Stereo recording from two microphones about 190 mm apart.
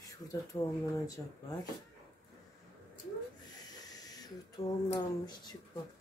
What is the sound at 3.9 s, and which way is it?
Speech, 20° left (ahead or behind).